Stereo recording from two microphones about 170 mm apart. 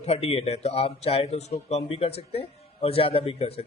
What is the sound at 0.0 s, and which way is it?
Speech, 35° left (ahead or behind).